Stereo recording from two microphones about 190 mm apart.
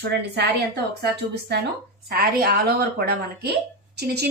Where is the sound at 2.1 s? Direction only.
55° right (ahead or behind).